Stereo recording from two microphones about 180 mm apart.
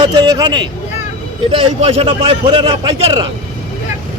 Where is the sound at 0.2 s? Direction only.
25° right (ahead or behind).